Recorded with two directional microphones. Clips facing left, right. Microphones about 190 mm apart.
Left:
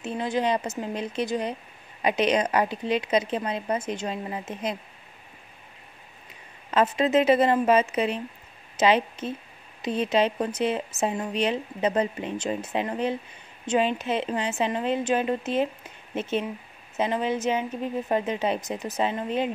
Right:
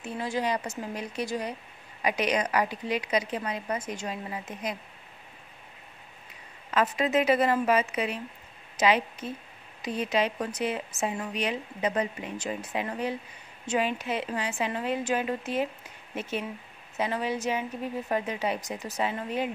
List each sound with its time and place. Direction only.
0.0 s speech: 20° left (ahead or behind)
6.7 s speech: 25° left (ahead or behind)